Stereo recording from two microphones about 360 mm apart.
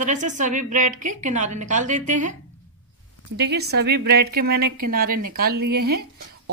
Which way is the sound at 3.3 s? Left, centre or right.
Right.